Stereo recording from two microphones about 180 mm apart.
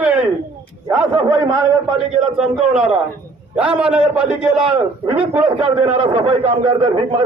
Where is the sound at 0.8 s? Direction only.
15° right (ahead or behind).